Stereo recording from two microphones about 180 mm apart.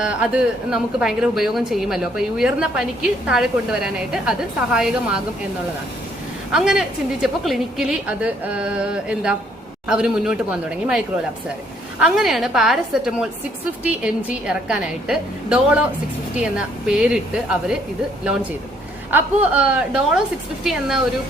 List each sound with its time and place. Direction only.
0.0 s a woman's voice: 5° right (ahead or behind)
6.5 s a woman's voice: 5° right (ahead or behind)
19.1 s a woman's voice: 5° right (ahead or behind)